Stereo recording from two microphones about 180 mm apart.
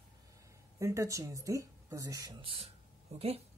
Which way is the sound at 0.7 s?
15° right (ahead or behind).